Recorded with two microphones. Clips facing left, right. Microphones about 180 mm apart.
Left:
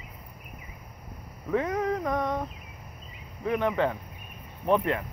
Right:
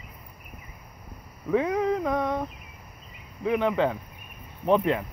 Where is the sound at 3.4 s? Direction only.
10° right (ahead or behind).